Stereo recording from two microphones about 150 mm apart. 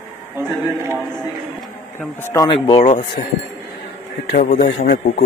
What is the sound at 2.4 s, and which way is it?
Speech, 30° left (ahead or behind).